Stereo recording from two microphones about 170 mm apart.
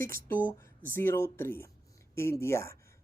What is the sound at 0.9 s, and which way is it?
Speech, 15° left (ahead or behind).